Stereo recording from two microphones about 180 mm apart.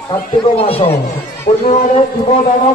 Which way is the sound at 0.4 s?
30° left (ahead or behind).